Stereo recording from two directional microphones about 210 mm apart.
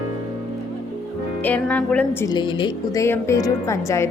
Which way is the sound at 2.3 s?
20° left (ahead or behind).